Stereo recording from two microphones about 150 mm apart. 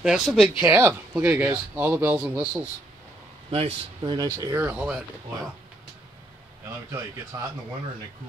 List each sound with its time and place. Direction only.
0.0 s speech: centre (ahead or behind)
0.6 s speech: 15° right (ahead or behind)
3.4 s speech: 40° right (ahead or behind)
4.6 s speech: 15° right (ahead or behind)
6.6 s speech: 20° right (ahead or behind)